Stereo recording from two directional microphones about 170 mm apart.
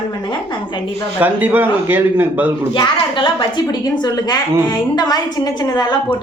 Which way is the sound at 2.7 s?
30° left (ahead or behind).